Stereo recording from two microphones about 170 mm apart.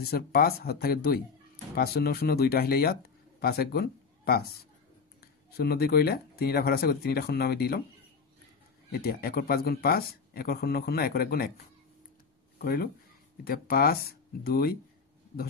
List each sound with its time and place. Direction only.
0.0 s speech: 60° left (ahead or behind)
5.6 s speech: 70° left (ahead or behind)
8.9 s speech: 65° left (ahead or behind)
12.5 s speech: 65° left (ahead or behind)